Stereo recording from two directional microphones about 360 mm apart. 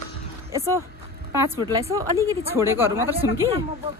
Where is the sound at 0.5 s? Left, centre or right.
Centre.